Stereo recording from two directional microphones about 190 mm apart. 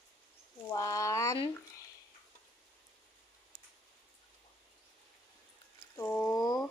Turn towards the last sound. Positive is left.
turn(degrees=20)  # may be behind; listen again after turning